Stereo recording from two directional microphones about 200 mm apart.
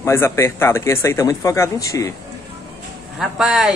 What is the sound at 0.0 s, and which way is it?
Speech, 15° left (ahead or behind).